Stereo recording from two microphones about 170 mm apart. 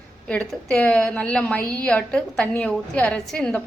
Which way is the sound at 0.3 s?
5° left (ahead or behind).